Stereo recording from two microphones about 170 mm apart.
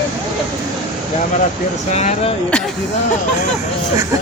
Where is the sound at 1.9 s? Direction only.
40° left (ahead or behind).